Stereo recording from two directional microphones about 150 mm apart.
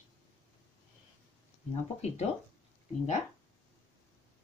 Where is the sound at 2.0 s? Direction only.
45° left (ahead or behind).